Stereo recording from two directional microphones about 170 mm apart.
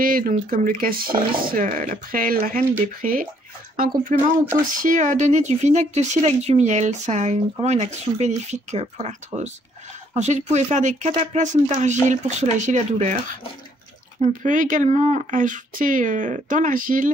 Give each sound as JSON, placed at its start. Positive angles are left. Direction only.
{"t": 0.0, "sound": "speech", "side_deg": -55}